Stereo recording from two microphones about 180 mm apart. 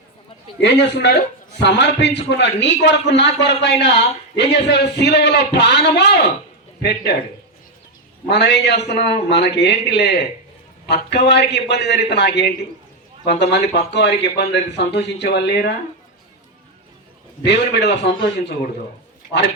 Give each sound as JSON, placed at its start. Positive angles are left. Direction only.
{"t": 0.6, "sound": "a man's voice", "side_deg": 75}
{"t": 8.3, "sound": "a man's voice", "side_deg": 70}
{"t": 17.4, "sound": "a man's voice", "side_deg": 70}